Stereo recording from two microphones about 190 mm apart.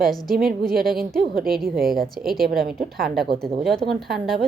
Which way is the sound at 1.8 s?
50° right (ahead or behind).